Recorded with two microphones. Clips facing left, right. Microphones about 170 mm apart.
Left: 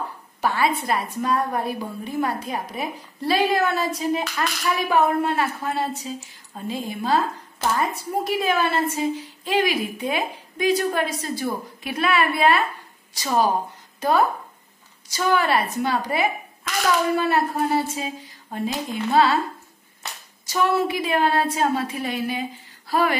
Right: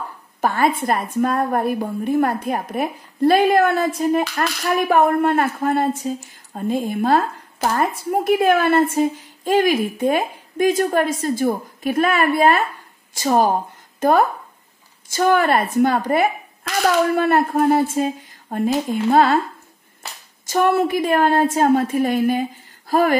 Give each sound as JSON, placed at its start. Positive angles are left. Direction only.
{"t": 0.4, "sound": "a woman's voice", "side_deg": -50}
{"t": 20.4, "sound": "a woman's voice", "side_deg": -50}